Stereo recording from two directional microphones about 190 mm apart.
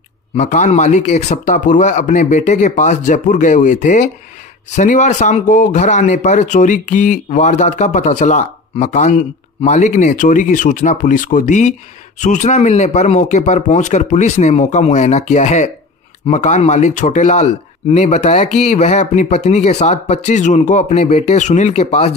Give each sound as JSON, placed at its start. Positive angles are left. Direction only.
{"t": 0.4, "sound": "speech", "side_deg": 40}